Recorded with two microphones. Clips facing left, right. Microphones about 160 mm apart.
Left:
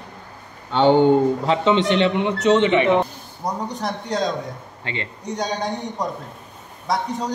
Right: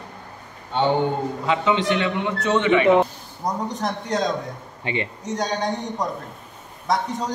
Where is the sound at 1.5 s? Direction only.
25° left (ahead or behind).